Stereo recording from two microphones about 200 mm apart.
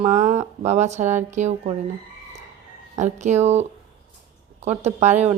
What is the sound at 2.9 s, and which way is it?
Speech, 35° right (ahead or behind).